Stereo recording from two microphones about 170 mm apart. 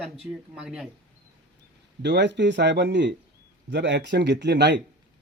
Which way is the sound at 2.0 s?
90° right.